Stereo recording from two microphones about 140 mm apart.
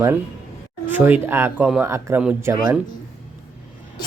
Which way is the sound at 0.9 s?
15° right (ahead or behind).